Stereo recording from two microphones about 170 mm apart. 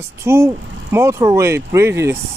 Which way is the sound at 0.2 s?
15° right (ahead or behind).